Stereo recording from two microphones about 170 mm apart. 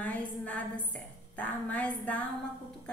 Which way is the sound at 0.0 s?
10° left (ahead or behind).